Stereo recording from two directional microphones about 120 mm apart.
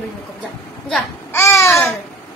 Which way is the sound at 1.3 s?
25° left (ahead or behind).